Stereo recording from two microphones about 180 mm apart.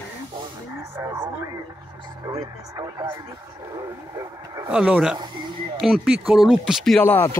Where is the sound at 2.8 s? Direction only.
20° right (ahead or behind).